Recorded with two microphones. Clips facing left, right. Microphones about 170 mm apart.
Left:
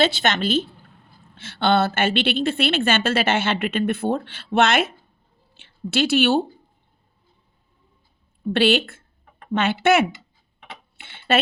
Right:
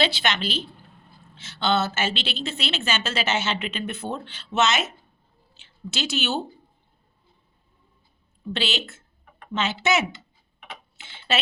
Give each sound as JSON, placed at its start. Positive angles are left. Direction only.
{"t": 0.0, "sound": "a woman's voice", "side_deg": 50}
{"t": 8.5, "sound": "speech", "side_deg": 55}
{"t": 10.9, "sound": "a sound", "side_deg": 60}